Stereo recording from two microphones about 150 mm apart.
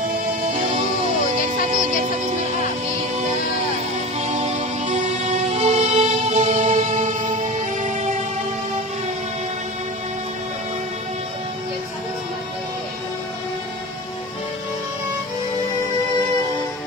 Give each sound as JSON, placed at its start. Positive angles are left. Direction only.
{"t": 1.5, "sound": "music", "side_deg": -55}
{"t": 4.2, "sound": "music", "side_deg": -45}